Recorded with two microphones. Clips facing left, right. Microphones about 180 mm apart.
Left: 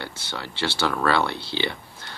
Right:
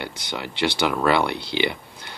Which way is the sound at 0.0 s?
15° right (ahead or behind).